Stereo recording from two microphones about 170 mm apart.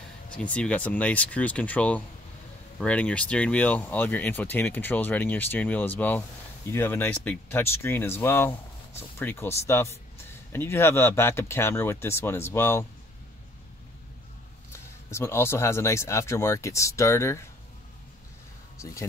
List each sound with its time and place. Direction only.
0.4 s speech: 10° left (ahead or behind)
15.0 s speech: 15° left (ahead or behind)
18.8 s speech: 15° left (ahead or behind)